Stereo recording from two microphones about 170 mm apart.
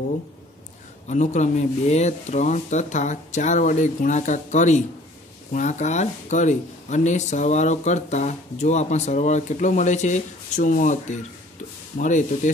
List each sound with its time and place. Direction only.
1.0 s speech: 45° left (ahead or behind)